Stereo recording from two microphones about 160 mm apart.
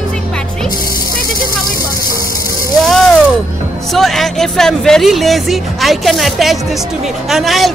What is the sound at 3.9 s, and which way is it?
Speech, centre (ahead or behind).